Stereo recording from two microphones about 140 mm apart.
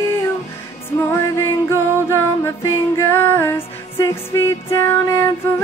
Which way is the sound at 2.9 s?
15° left (ahead or behind).